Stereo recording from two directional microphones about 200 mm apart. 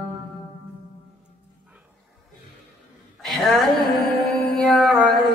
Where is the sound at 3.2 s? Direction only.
Centre (ahead or behind).